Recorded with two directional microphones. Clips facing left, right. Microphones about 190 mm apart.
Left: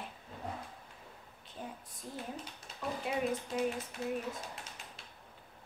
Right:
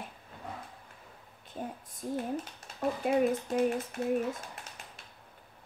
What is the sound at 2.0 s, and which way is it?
A child's voice, 55° right (ahead or behind).